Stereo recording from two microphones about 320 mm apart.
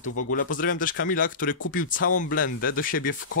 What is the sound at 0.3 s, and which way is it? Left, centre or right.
Speech, left.